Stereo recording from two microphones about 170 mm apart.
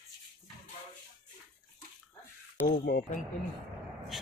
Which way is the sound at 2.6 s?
65° left (ahead or behind).